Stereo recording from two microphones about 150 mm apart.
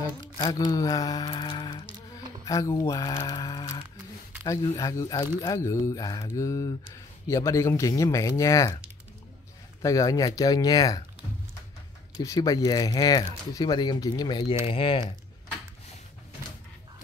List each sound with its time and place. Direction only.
0.5 s speech: 25° left (ahead or behind)
9.8 s speech: 20° left (ahead or behind)
12.2 s speech: 25° left (ahead or behind)